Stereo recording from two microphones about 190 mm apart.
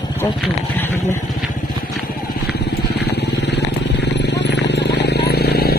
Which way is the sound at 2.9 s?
60° left (ahead or behind).